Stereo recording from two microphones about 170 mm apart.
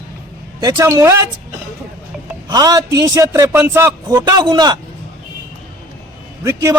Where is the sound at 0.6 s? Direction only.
20° right (ahead or behind).